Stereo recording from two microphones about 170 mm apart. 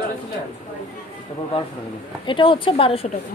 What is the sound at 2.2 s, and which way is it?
Speech, 30° left (ahead or behind).